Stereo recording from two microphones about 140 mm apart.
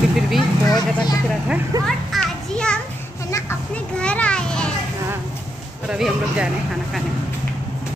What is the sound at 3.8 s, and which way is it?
Speech, 10° left (ahead or behind).